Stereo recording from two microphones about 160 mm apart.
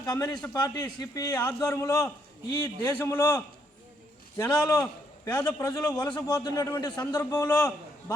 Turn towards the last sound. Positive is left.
turn(degrees=20)  # may be behind; listen again after turning